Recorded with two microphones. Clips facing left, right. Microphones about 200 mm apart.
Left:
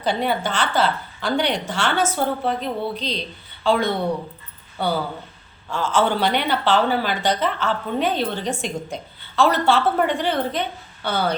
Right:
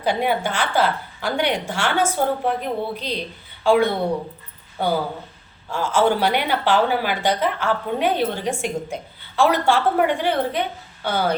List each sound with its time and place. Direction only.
0.0 s a woman's voice: 10° right (ahead or behind)
5.7 s a woman's voice: 10° right (ahead or behind)